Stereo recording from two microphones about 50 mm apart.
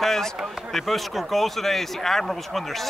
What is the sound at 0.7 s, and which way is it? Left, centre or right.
Speech, centre.